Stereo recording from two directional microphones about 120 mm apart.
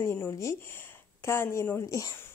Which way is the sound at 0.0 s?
20° left (ahead or behind).